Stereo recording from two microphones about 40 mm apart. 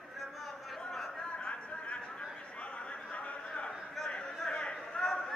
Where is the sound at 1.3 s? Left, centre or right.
Left.